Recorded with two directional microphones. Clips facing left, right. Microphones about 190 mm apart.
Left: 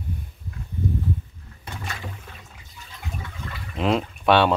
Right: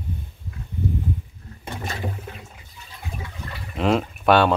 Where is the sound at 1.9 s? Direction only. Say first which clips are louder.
Right 8 dB; 25° right (ahead or behind).